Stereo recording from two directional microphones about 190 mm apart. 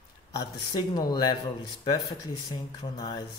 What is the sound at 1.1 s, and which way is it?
Speech, 25° left (ahead or behind).